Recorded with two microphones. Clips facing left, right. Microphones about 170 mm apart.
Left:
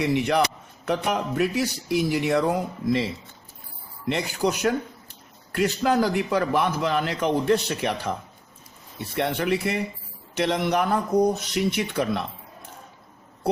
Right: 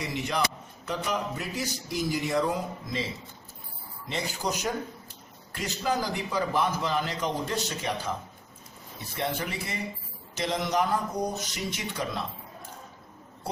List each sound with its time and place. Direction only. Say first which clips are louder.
0.0 s speech: left 8 dB; 65° left (ahead or behind)
4.1 s speech: left 7 dB; 65° left (ahead or behind)
9.1 s speech: left 8 dB; 65° left (ahead or behind)